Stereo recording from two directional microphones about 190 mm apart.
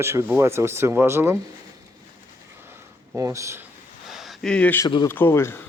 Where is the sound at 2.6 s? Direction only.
15° right (ahead or behind).